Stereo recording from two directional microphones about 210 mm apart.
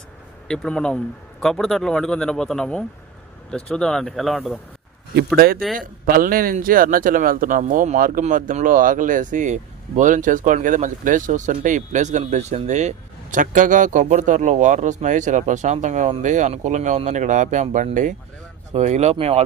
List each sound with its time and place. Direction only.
0.4 s a man's voice: 5° left (ahead or behind)
5.7 s speech: 45° right (ahead or behind)